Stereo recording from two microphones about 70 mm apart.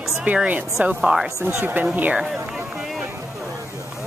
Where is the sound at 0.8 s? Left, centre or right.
Centre.